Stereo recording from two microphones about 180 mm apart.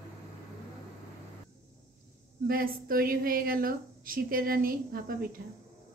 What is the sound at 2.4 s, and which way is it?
A woman's voice, 55° right (ahead or behind).